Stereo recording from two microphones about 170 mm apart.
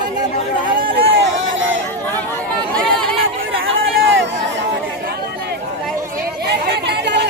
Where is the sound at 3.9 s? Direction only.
90° right.